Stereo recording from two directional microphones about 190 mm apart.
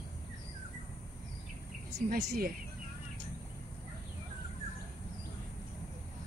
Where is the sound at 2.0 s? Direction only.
50° right (ahead or behind).